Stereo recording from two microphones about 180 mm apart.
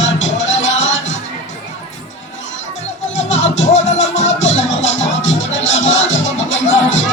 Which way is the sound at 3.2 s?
90° left.